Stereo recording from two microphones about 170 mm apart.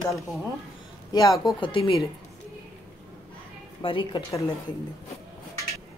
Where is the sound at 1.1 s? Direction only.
25° left (ahead or behind).